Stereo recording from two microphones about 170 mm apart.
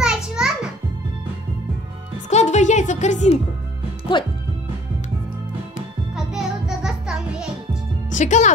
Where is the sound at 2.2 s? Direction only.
45° left (ahead or behind).